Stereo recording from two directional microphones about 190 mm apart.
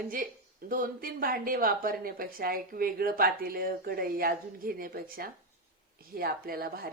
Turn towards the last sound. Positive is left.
turn(degrees=-50)  # may be behind; listen again after turning